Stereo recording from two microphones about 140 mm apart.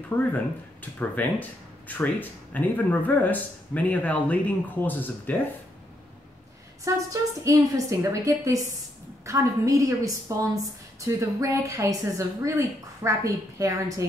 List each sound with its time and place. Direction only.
0.1 s speech: 15° left (ahead or behind)
6.8 s a woman's voice: 25° right (ahead or behind)